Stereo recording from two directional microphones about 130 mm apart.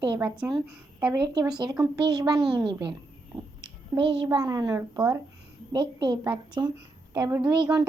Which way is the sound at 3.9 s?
40° right (ahead or behind).